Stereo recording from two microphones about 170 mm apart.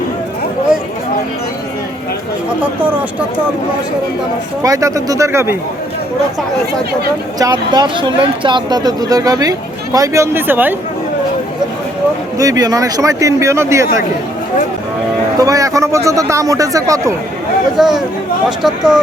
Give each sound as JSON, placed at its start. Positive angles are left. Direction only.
{"t": 4.6, "sound": "speech", "side_deg": -20}
{"t": 7.3, "sound": "speech", "side_deg": -25}
{"t": 12.4, "sound": "speech", "side_deg": -20}
{"t": 15.4, "sound": "speech", "side_deg": -20}
{"t": 17.7, "sound": "speech", "side_deg": 0}